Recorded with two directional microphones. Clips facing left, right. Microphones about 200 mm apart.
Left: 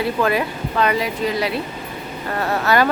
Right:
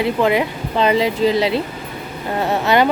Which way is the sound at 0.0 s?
20° right (ahead or behind).